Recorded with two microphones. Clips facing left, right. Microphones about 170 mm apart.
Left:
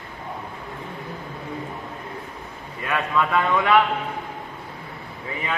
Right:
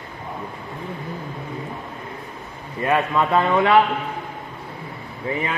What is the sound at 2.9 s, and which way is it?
Speech, 30° right (ahead or behind).